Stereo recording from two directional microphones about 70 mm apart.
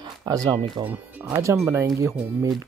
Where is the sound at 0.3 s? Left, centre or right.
Right.